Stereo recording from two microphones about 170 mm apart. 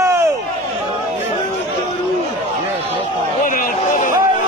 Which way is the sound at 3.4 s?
50° left (ahead or behind).